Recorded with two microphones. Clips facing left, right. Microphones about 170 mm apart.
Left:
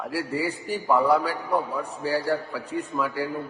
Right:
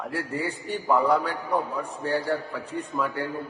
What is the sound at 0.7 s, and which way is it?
Speech, 10° left (ahead or behind).